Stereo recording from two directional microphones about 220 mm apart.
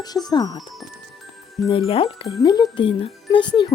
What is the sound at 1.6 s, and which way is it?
Speech, 25° left (ahead or behind).